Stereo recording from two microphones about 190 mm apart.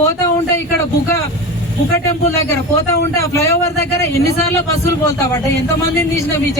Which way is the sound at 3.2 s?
15° left (ahead or behind).